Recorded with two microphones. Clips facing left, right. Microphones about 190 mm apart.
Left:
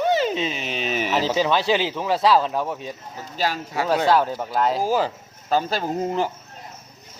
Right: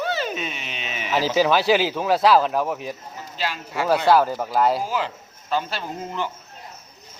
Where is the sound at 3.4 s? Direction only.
45° left (ahead or behind).